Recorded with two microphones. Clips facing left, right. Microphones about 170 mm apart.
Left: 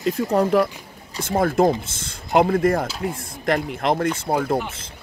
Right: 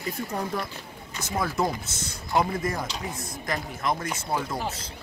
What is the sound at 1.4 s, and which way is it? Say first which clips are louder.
Speech: left 9 dB; 55° left (ahead or behind).